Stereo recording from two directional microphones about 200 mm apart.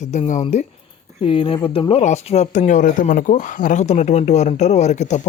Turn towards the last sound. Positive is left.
turn(degrees=35)  # may be behind; listen again after turning